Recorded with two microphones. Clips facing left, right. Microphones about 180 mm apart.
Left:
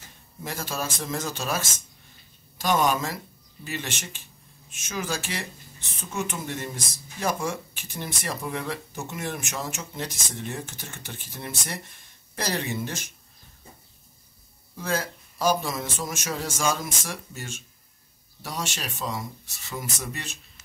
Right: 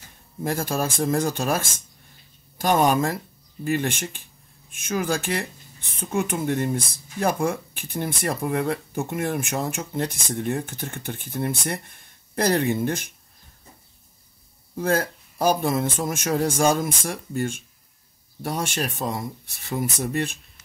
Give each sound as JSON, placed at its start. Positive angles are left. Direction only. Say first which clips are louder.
{"t": 0.4, "sound": "a man's voice", "louder": "right 7 dB", "side_deg": -50}
{"t": 14.8, "sound": "a man's voice", "louder": "right 6 dB", "side_deg": -55}